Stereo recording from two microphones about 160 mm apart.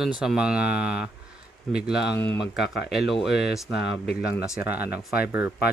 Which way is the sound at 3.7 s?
90° left.